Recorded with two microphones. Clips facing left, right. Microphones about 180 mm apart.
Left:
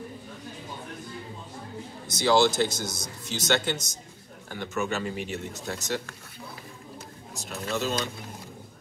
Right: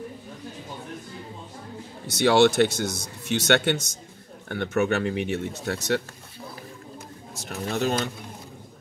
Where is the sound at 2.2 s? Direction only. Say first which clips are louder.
Right 4 dB; 70° right (ahead or behind).